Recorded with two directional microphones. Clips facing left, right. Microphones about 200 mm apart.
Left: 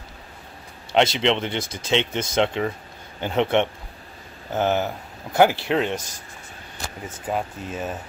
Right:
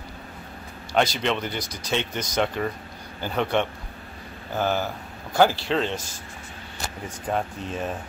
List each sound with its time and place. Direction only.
0.9 s speech: 20° left (ahead or behind)
7.2 s speech: 5° left (ahead or behind)